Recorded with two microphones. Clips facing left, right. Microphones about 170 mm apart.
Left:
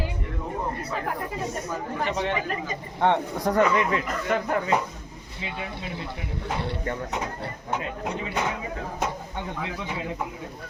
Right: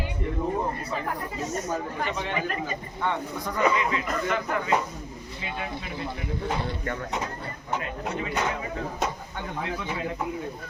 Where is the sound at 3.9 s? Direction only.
40° left (ahead or behind).